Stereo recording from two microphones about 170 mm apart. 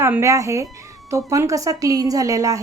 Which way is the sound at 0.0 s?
15° right (ahead or behind).